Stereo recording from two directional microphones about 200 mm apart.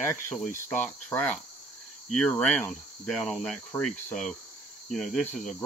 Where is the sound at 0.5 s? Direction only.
10° left (ahead or behind).